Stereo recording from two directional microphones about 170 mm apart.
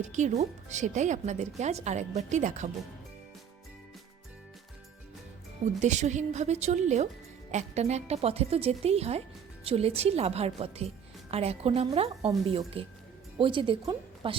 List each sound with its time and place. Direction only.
0.0 s speech: 45° right (ahead or behind)
5.8 s a woman's voice: 45° right (ahead or behind)